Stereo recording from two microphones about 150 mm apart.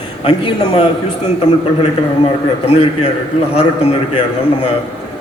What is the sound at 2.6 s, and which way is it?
A man's voice, 40° left (ahead or behind).